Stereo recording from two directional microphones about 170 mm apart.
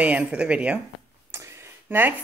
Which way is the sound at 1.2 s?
15° right (ahead or behind).